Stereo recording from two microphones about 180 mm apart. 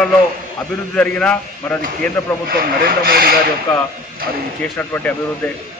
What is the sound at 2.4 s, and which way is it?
Speech, 55° right (ahead or behind).